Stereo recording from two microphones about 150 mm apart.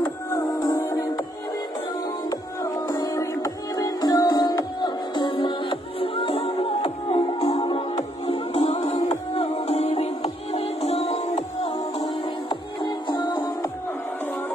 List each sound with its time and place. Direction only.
0.0 s music: 25° left (ahead or behind)
2.6 s music: 20° left (ahead or behind); by 7.2 s 40° left (ahead or behind)
7.3 s music: 30° left (ahead or behind); by 11.7 s 45° left (ahead or behind)
12.0 s music: 30° left (ahead or behind)